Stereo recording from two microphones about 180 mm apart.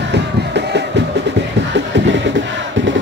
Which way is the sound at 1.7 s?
90° right.